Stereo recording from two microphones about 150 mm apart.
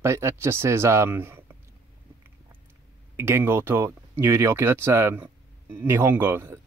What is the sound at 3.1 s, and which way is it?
Speech, 15° right (ahead or behind).